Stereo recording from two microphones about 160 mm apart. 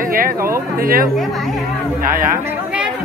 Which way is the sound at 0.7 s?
65° right (ahead or behind).